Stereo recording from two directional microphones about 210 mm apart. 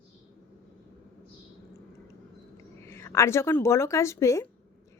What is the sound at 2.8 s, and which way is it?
Speech, 10° left (ahead or behind).